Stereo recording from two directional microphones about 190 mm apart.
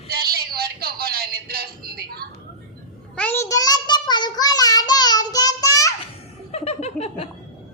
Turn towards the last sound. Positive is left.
turn(degrees=35)  # may be behind; listen again after turning